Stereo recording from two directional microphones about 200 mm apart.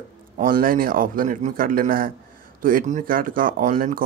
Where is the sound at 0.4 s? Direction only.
45° right (ahead or behind).